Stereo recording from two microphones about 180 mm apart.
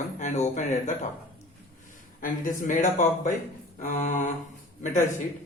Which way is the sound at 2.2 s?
50° left (ahead or behind).